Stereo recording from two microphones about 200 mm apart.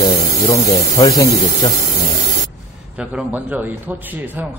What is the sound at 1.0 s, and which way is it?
Speech, 20° left (ahead or behind).